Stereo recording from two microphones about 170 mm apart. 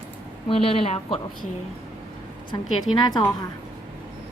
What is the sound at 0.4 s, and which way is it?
Speech, 35° left (ahead or behind).